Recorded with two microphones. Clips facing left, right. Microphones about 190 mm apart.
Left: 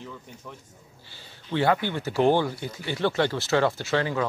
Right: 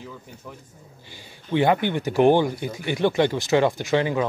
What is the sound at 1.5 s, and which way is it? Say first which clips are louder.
Speech: right 4 dB; 20° right (ahead or behind).